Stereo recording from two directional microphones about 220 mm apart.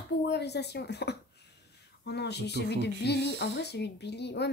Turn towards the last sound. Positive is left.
turn(degrees=50)  # may be behind; listen again after turning